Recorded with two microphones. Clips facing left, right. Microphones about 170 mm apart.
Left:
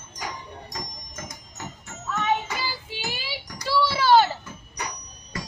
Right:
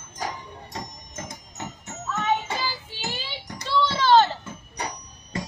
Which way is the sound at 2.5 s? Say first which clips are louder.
Right 2 dB; 30° right (ahead or behind).